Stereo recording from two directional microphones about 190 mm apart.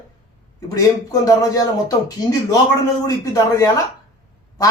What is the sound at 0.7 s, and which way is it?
A man's voice, 20° left (ahead or behind).